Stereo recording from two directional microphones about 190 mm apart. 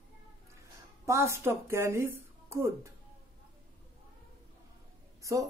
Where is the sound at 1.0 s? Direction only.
15° right (ahead or behind).